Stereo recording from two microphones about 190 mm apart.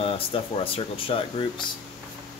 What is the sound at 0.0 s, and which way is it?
Speech, 30° left (ahead or behind).